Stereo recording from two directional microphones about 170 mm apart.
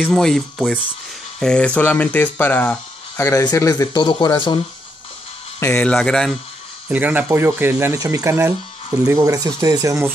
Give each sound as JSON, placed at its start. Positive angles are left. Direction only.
{"t": 0.0, "sound": "speech", "side_deg": 5}
{"t": 5.6, "sound": "speech", "side_deg": 5}
{"t": 6.9, "sound": "speech", "side_deg": -10}